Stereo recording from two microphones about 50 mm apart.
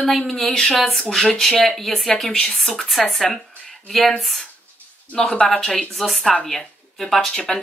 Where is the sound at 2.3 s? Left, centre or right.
Centre.